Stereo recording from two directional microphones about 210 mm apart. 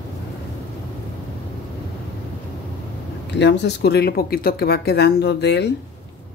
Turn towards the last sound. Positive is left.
turn(degrees=55)  # may be behind; listen again after turning